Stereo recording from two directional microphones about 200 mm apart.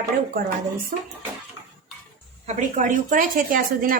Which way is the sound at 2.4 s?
35° right (ahead or behind).